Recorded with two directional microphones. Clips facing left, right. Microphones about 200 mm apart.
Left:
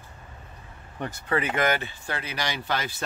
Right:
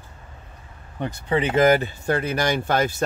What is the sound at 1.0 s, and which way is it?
Speech, 20° right (ahead or behind).